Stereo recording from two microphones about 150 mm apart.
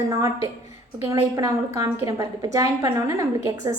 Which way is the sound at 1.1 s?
25° right (ahead or behind).